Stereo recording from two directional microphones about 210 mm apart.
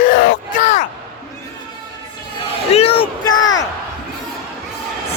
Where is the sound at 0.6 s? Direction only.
35° left (ahead or behind).